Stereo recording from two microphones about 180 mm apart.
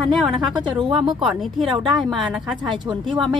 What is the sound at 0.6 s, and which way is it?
Speech, 30° right (ahead or behind).